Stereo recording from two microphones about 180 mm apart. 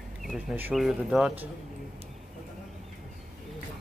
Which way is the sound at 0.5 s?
5° right (ahead or behind).